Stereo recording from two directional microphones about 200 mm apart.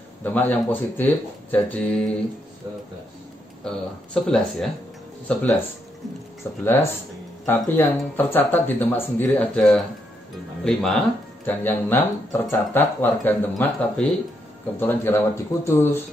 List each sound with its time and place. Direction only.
0.2 s speech: 10° left (ahead or behind)
3.6 s speech: 5° left (ahead or behind)
6.6 s speech: 10° left (ahead or behind)